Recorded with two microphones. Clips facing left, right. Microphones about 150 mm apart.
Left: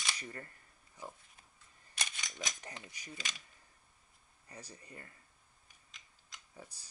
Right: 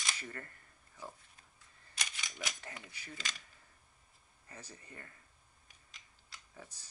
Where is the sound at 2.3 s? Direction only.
20° left (ahead or behind).